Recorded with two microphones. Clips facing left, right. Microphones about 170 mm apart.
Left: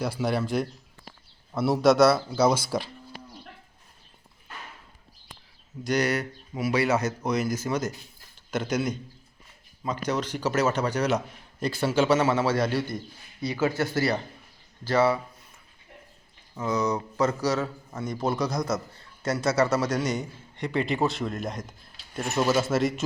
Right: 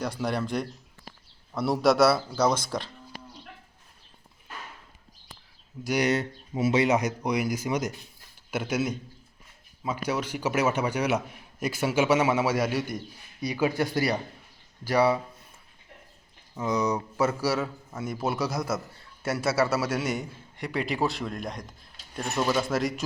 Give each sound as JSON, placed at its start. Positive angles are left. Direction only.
{"t": 0.0, "sound": "a man's voice", "side_deg": 5}
{"t": 5.8, "sound": "a man's voice", "side_deg": -10}
{"t": 6.1, "sound": "a man's voice", "side_deg": -25}
{"t": 16.6, "sound": "a man's voice", "side_deg": -15}